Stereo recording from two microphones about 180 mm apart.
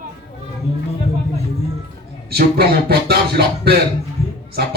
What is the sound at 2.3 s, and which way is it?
Speech, 60° right (ahead or behind).